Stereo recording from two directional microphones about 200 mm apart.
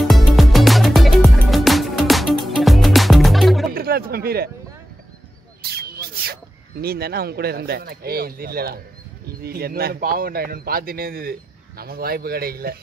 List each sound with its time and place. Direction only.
0.0 s music: centre (ahead or behind)
3.7 s music: 50° right (ahead or behind)
5.6 s a sound: 50° right (ahead or behind)
6.8 s a man's voice: 50° right (ahead or behind)